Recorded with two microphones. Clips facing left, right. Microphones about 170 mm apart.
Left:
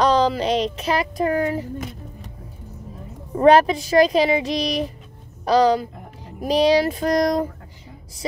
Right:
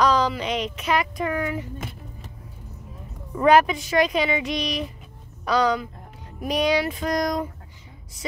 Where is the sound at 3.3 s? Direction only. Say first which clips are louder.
Left 3 dB; 35° left (ahead or behind).